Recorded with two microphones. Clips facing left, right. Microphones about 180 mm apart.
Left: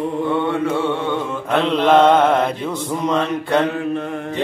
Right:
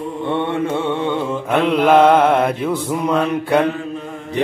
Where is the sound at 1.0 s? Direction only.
10° right (ahead or behind).